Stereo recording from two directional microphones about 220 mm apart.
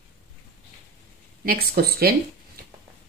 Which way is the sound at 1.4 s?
45° right (ahead or behind).